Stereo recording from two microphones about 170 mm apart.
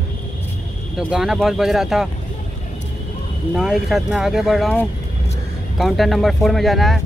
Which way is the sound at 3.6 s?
Centre (ahead or behind).